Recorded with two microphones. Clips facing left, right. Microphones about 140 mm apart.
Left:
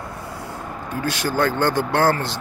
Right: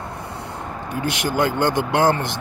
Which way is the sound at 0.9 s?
15° right (ahead or behind).